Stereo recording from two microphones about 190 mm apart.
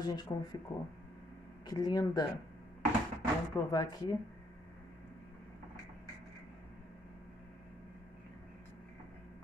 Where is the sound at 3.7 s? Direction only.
20° left (ahead or behind).